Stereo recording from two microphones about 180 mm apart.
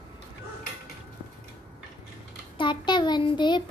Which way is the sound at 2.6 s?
25° left (ahead or behind).